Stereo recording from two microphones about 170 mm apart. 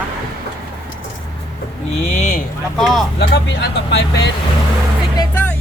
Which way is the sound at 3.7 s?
90° left.